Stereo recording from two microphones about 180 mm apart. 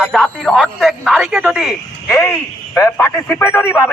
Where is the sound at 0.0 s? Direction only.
5° left (ahead or behind).